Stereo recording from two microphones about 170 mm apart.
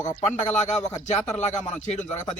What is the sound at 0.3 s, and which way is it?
A man's voice, 40° left (ahead or behind).